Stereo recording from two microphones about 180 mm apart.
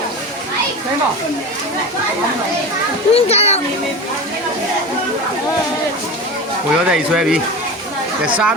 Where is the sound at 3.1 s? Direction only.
35° left (ahead or behind).